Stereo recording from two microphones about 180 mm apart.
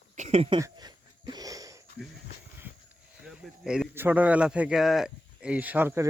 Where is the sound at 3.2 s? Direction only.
Centre (ahead or behind).